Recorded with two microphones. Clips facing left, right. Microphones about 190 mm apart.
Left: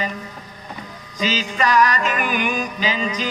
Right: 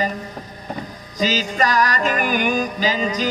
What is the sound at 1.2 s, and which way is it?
Music, 40° right (ahead or behind).